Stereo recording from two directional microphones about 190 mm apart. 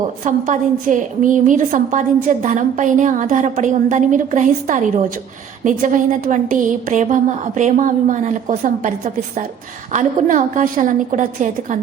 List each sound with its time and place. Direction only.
0.3 s a woman's voice: 40° right (ahead or behind)